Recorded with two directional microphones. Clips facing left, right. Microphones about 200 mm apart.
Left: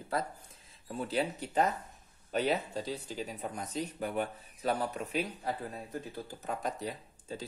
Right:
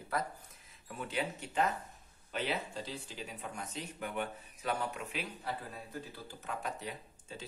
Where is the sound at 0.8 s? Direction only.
35° left (ahead or behind).